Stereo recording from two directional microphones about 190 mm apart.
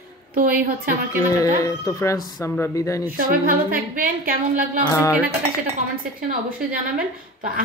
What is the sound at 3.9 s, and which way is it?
Speech, 50° right (ahead or behind).